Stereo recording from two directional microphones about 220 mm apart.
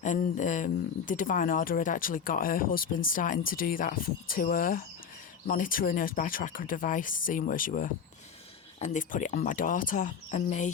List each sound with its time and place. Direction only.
0.0 s speech: 35° left (ahead or behind)